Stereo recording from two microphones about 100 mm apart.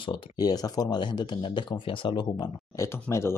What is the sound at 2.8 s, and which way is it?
Speech, 30° left (ahead or behind).